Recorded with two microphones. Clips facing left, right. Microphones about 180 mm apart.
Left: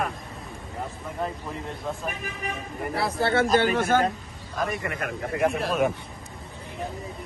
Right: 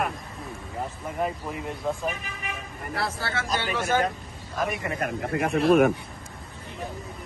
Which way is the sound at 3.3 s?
55° left (ahead or behind).